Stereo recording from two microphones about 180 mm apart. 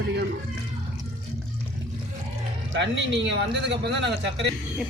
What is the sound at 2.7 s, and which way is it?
Speech, 75° right (ahead or behind).